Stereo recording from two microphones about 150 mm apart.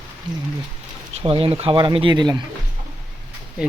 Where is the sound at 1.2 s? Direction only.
40° right (ahead or behind).